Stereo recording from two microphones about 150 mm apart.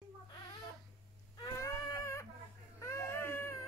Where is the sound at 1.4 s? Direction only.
25° left (ahead or behind).